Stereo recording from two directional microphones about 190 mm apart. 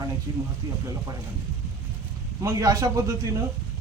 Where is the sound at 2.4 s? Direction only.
15° right (ahead or behind).